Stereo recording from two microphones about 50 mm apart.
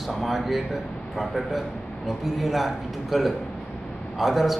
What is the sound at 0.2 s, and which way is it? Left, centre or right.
A man's voice, centre.